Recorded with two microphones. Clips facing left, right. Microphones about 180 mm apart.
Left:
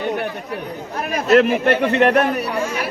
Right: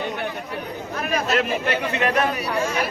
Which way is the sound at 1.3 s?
55° left (ahead or behind).